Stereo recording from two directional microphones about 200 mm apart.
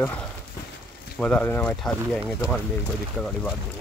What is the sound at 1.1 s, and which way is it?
Speech, 5° left (ahead or behind).